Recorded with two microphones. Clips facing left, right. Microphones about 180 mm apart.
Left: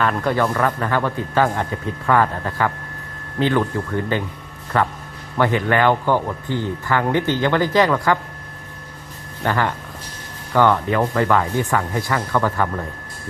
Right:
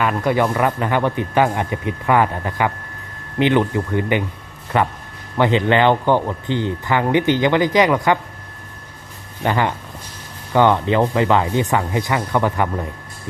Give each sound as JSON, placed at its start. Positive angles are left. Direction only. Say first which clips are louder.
{"t": 0.0, "sound": "speech", "louder": "right 1 dB", "side_deg": -10}
{"t": 9.4, "sound": "speech", "louder": "right 2 dB", "side_deg": -20}